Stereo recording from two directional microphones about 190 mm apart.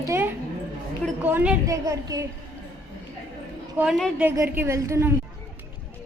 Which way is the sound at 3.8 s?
Centre (ahead or behind).